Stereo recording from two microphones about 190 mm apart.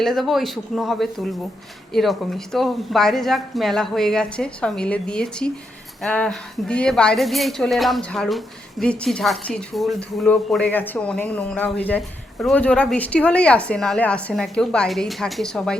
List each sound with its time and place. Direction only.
0.0 s a woman's voice: centre (ahead or behind)